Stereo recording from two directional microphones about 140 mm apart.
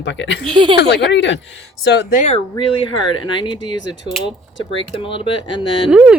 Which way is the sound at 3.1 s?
35° left (ahead or behind).